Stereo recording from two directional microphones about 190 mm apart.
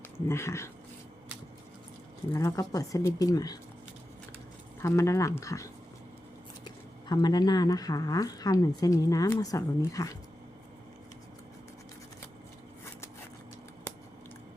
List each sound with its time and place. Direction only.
0.3 s speech: 15° left (ahead or behind)
2.3 s speech: 20° left (ahead or behind)
4.8 s speech: 15° left (ahead or behind)